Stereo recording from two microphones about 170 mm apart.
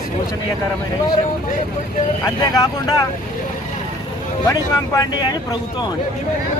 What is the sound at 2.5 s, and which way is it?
Speech, 20° left (ahead or behind).